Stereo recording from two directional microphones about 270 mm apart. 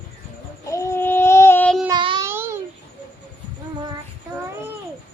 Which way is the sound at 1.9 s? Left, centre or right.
Centre.